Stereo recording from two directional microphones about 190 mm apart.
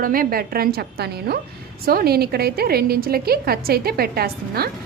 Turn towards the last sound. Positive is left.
turn(degrees=-55)  # may be behind; listen again after turning